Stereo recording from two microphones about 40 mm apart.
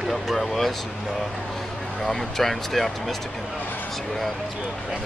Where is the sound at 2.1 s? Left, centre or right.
Centre.